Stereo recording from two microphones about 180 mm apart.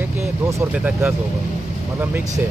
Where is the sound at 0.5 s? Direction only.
15° right (ahead or behind).